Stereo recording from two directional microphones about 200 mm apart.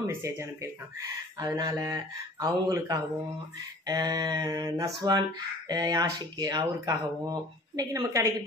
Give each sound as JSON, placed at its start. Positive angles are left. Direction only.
{"t": 0.0, "sound": "speech", "side_deg": -15}